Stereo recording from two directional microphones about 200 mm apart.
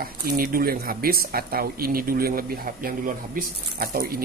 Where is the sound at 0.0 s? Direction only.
50° right (ahead or behind).